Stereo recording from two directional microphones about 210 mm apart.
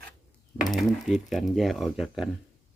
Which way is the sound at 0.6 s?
Centre (ahead or behind).